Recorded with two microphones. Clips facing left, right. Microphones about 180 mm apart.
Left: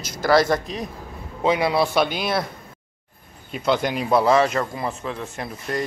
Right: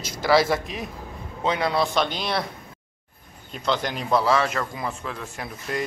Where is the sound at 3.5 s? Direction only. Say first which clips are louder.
Left 4 dB; 10° left (ahead or behind).